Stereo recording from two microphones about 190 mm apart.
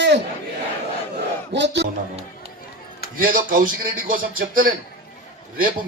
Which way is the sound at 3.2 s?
45° right (ahead or behind).